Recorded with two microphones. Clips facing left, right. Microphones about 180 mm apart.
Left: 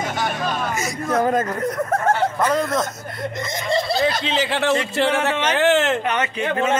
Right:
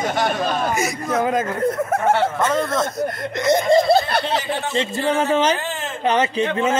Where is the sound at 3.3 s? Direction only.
75° right (ahead or behind).